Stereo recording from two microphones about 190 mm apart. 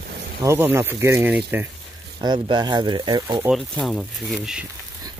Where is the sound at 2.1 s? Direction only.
25° right (ahead or behind).